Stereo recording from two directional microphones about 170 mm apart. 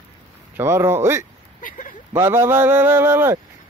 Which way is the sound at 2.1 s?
15° right (ahead or behind).